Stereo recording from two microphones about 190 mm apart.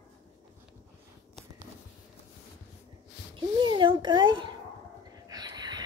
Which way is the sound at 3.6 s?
25° right (ahead or behind).